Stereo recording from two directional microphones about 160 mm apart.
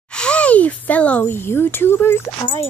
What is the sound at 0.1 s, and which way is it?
Speech, 5° left (ahead or behind).